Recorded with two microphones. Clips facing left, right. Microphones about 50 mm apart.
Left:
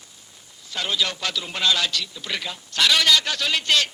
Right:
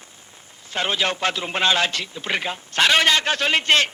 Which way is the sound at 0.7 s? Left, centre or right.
Right.